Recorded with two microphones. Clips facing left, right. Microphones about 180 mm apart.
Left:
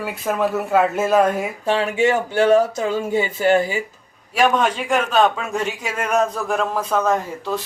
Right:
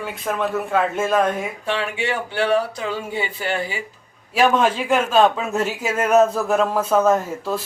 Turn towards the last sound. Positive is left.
turn(degrees=-5)  # may be behind; listen again after turning